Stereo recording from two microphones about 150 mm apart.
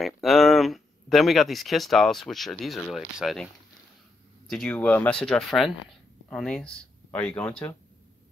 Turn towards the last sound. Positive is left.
turn(degrees=10)  # may be behind; listen again after turning